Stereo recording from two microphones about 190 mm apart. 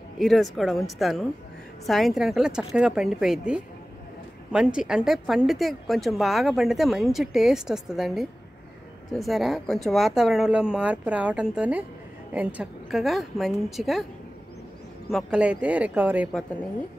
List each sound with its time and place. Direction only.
0.2 s a woman's voice: centre (ahead or behind)
15.0 s speech: centre (ahead or behind)